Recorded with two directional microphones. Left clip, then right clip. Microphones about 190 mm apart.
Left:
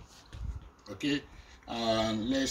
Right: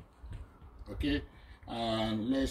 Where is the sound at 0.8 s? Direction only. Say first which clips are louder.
Left 2 dB; centre (ahead or behind).